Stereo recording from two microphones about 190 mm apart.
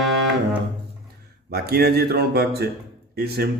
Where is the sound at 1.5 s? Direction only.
55° right (ahead or behind).